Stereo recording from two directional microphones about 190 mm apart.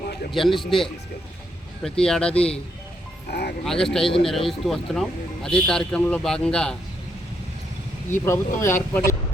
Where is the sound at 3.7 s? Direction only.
Centre (ahead or behind).